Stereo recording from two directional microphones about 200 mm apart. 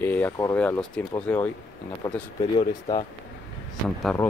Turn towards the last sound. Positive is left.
turn(degrees=5)  # may be behind; listen again after turning